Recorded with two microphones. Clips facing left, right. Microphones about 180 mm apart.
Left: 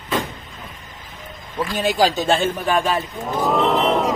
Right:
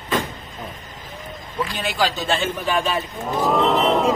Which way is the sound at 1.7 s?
40° left (ahead or behind).